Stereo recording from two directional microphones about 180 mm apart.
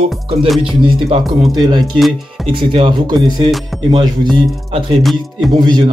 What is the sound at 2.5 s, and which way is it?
Speech, 25° right (ahead or behind).